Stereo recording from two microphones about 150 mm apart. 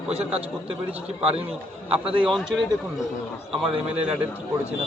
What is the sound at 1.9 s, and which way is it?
Speech, 35° right (ahead or behind).